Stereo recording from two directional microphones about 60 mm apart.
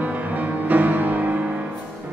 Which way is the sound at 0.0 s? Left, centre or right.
Right.